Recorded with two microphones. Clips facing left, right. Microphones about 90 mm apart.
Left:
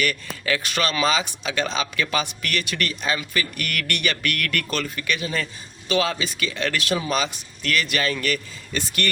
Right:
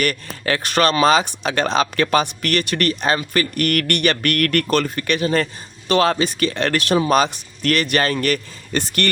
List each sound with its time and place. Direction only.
0.0 s speech: 50° right (ahead or behind)